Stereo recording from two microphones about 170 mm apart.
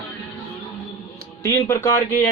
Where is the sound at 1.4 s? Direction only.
20° left (ahead or behind).